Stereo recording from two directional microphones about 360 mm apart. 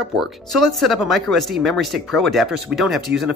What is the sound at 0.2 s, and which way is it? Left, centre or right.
Speech, centre.